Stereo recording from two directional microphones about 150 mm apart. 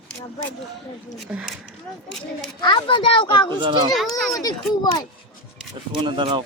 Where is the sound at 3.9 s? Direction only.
Centre (ahead or behind).